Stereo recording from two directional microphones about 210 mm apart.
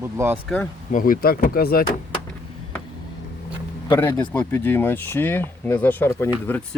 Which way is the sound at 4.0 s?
10° left (ahead or behind).